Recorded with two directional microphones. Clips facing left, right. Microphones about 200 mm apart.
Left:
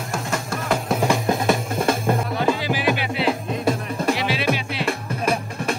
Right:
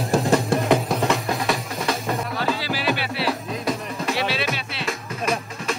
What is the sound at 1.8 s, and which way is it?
Music, 50° left (ahead or behind).